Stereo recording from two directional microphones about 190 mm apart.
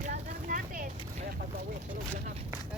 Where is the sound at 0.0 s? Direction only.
40° right (ahead or behind).